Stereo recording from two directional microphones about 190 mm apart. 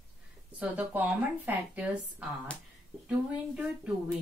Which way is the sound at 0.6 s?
10° right (ahead or behind).